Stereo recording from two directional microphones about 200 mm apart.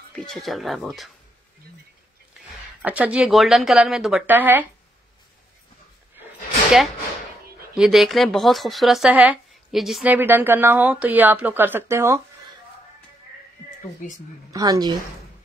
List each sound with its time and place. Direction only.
0.1 s speech: centre (ahead or behind)
2.8 s speech: 5° right (ahead or behind)
7.7 s speech: centre (ahead or behind)
14.5 s speech: 15° right (ahead or behind)